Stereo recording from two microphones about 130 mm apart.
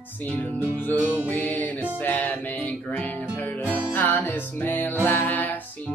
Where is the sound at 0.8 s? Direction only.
15° left (ahead or behind).